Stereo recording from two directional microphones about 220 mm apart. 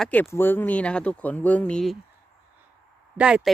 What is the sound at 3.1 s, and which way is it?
Speech, 5° right (ahead or behind).